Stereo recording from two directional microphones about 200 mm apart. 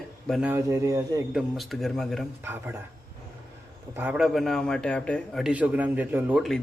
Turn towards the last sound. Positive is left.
turn(degrees=0)  # may be behind; listen again after turning